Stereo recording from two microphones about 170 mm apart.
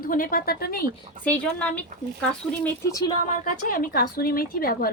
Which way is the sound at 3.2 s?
50° left (ahead or behind).